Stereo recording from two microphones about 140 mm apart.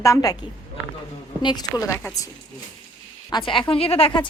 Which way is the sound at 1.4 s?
30° left (ahead or behind).